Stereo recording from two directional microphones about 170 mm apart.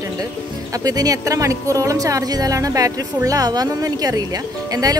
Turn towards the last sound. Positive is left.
turn(degrees=-20)  # may be behind; listen again after turning